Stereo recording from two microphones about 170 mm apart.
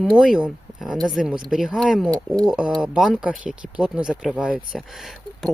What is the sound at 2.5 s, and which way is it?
Speech, 5° right (ahead or behind).